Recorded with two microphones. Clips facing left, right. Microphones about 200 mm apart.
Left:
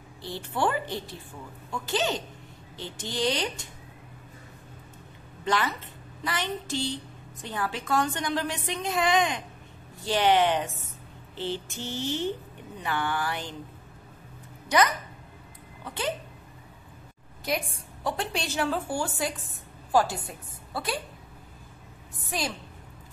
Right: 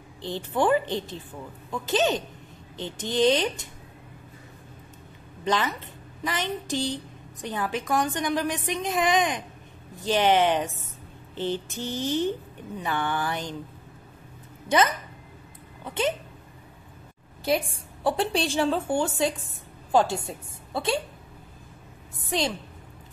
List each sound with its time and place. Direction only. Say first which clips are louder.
0.2 s a woman's voice: right 3 dB; 20° right (ahead or behind)
5.4 s a woman's voice: right 2 dB; 15° right (ahead or behind)
15.8 s speech: right 6 dB; 20° right (ahead or behind)
17.5 s a woman's voice: right 5 dB; 30° right (ahead or behind)